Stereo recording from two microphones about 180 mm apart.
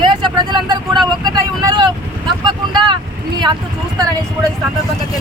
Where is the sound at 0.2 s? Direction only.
25° right (ahead or behind).